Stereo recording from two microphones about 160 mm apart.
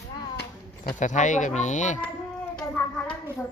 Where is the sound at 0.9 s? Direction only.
50° left (ahead or behind).